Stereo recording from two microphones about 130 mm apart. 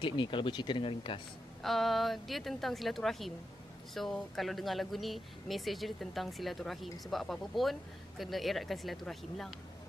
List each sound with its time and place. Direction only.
0.0 s speech: 40° left (ahead or behind)
1.6 s speech: centre (ahead or behind)